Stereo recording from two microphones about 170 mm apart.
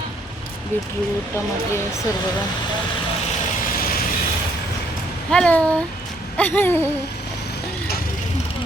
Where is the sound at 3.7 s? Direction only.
60° left (ahead or behind).